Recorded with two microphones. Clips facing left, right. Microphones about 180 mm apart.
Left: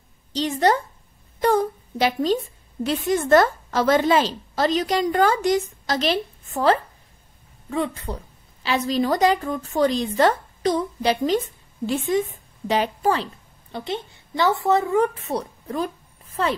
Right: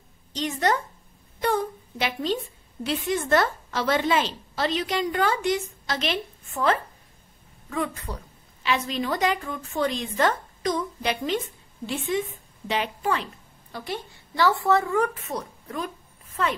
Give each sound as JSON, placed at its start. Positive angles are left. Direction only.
{"t": 0.3, "sound": "a woman's voice", "side_deg": 35}